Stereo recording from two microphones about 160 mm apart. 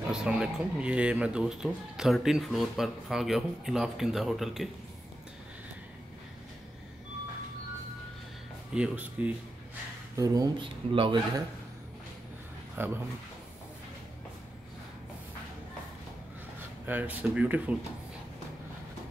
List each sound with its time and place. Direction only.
0.1 s speech: 5° right (ahead or behind)
8.7 s speech: 5° right (ahead or behind)
10.1 s speech: 20° right (ahead or behind)
12.8 s speech: 15° right (ahead or behind)
16.8 s speech: 10° right (ahead or behind)